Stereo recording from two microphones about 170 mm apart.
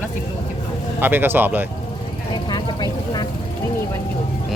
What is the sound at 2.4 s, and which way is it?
Speech, 25° left (ahead or behind).